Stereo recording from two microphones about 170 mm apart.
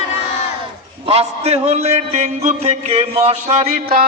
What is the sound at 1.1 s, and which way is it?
A man's voice, 40° right (ahead or behind).